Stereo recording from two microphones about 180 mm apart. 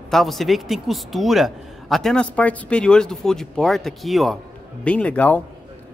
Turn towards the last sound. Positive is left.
turn(degrees=10)  # may be behind; listen again after turning